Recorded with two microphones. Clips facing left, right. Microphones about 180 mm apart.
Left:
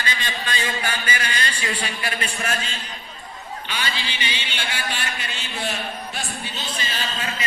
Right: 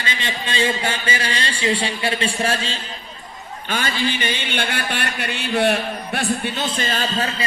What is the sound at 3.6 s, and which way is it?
A man's voice, 50° right (ahead or behind).